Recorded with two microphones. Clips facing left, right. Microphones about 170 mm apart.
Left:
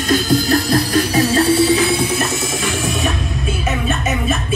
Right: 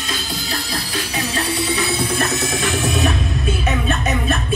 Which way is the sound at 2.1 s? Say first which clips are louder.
Even; centre (ahead or behind).